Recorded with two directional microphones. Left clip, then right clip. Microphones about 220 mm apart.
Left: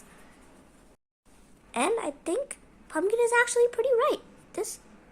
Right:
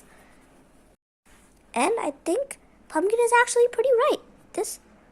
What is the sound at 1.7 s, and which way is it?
A woman's voice, 20° right (ahead or behind).